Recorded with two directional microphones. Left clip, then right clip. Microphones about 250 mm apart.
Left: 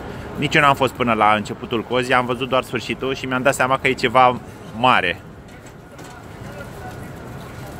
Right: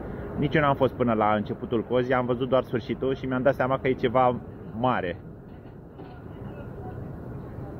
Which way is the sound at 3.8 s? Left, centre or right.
Left.